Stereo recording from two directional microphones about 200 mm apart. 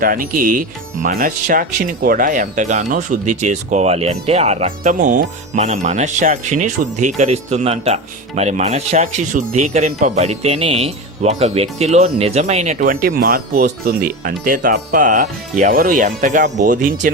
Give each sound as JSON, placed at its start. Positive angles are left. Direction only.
{"t": 0.0, "sound": "speech", "side_deg": -45}